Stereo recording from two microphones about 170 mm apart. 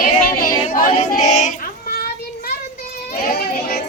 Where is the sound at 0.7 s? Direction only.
55° left (ahead or behind).